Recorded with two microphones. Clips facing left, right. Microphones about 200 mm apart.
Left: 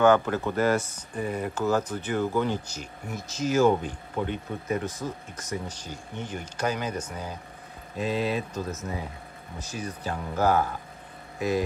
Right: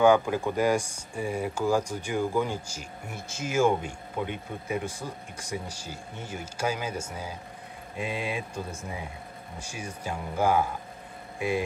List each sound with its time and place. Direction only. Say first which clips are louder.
0.0 s speech: even; 10° right (ahead or behind)
9.6 s speech: left 4 dB; 10° right (ahead or behind)